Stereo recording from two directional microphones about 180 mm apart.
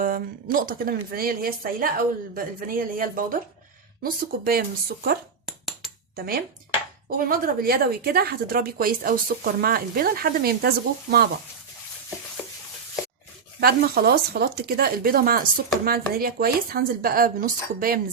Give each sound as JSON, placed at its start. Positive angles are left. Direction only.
{"t": 0.0, "sound": "speech", "side_deg": -50}
{"t": 5.5, "sound": "a sound", "side_deg": 0}
{"t": 6.1, "sound": "speech", "side_deg": -55}
{"t": 13.6, "sound": "speech", "side_deg": -60}